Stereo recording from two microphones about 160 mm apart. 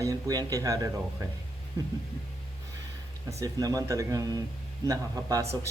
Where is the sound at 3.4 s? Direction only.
20° right (ahead or behind).